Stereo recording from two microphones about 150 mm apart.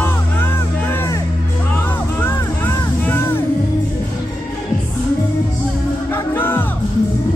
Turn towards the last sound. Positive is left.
turn(degrees=15)  # may be behind; listen again after turning